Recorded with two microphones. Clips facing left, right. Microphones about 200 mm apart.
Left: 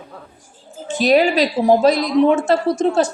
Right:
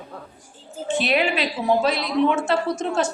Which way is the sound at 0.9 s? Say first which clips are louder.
Left 7 dB; 40° left (ahead or behind).